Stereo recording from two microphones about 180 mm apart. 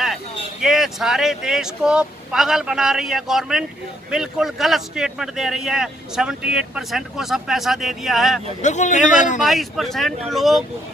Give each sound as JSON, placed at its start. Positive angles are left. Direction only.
{"t": 0.0, "sound": "speech", "side_deg": 0}
{"t": 8.6, "sound": "a man's voice", "side_deg": 40}
{"t": 9.4, "sound": "speech", "side_deg": 0}